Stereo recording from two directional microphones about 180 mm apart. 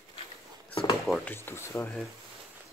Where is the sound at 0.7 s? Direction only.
30° left (ahead or behind).